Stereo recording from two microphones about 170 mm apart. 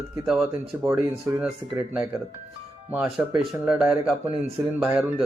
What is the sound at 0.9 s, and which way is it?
Speech, 15° right (ahead or behind).